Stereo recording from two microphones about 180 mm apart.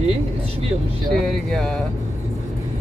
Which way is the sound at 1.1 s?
Centre (ahead or behind).